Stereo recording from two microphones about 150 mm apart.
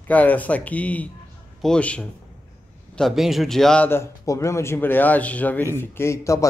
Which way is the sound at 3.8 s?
20° left (ahead or behind).